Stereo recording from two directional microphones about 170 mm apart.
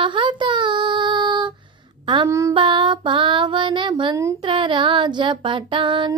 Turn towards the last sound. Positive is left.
turn(degrees=-30)  # may be behind; listen again after turning